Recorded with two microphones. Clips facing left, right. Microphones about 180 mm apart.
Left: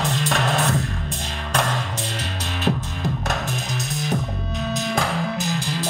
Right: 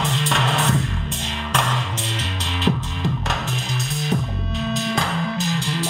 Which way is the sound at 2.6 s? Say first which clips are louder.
Right 1 dB; 40° left (ahead or behind).